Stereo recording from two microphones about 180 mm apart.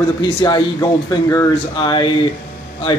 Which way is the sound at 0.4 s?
25° left (ahead or behind).